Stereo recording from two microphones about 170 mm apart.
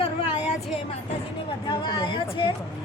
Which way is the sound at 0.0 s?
40° left (ahead or behind).